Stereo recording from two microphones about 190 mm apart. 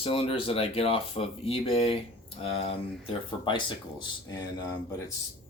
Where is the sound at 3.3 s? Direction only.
25° left (ahead or behind).